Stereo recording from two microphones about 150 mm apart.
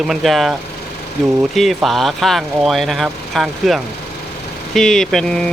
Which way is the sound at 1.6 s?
Centre (ahead or behind).